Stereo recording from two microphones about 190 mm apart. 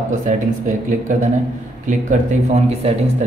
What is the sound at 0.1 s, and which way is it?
Speech, 45° right (ahead or behind).